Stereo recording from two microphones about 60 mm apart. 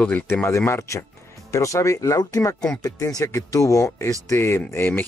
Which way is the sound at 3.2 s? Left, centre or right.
Left.